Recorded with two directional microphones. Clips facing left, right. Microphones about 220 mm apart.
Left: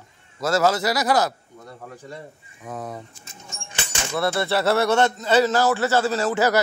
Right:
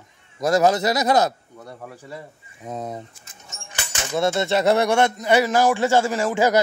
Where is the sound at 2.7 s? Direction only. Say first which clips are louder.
Right 2 dB; 25° right (ahead or behind).